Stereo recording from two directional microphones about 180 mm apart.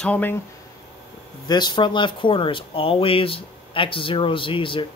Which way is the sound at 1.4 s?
25° left (ahead or behind).